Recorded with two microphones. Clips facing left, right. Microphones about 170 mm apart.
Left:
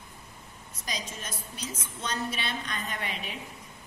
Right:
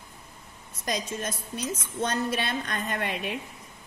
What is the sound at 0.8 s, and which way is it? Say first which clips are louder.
A woman's voice: right 8 dB; 55° right (ahead or behind).